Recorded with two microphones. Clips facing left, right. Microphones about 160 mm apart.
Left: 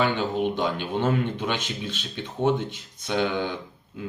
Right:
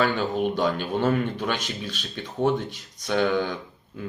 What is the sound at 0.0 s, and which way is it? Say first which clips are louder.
Speech: even; 20° left (ahead or behind).